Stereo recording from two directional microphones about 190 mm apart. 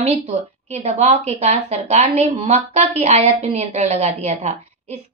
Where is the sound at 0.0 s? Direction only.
35° right (ahead or behind).